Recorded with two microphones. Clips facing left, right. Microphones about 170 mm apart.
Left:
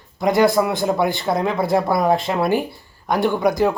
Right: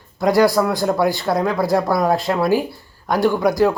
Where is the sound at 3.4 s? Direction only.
Centre (ahead or behind).